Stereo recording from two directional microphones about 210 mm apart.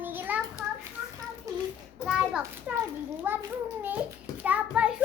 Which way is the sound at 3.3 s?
10° right (ahead or behind).